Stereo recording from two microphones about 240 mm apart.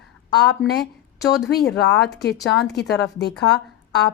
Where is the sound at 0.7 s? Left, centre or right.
Left.